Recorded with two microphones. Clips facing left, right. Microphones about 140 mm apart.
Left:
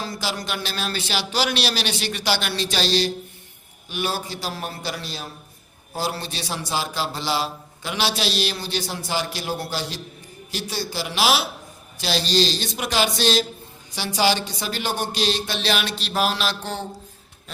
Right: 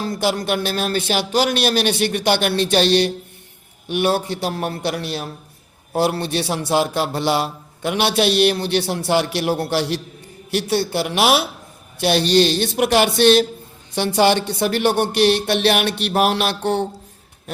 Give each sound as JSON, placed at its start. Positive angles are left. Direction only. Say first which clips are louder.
{"t": 0.0, "sound": "a man's voice", "louder": "right 8 dB", "side_deg": -55}